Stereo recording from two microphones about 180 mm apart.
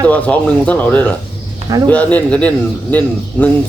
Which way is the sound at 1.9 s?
10° left (ahead or behind).